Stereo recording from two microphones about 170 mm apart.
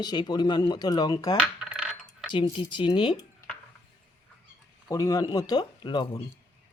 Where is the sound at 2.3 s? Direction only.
30° left (ahead or behind).